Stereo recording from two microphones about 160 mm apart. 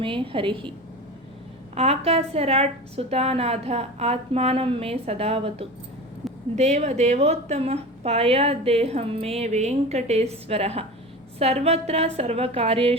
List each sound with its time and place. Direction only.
0.0 s a woman's voice: 35° right (ahead or behind)
1.7 s a woman's voice: 40° right (ahead or behind)
6.2 s a sound: centre (ahead or behind)
6.6 s a woman's voice: 45° right (ahead or behind)